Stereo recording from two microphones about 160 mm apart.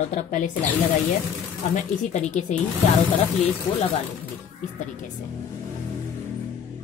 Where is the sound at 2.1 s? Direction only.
45° left (ahead or behind).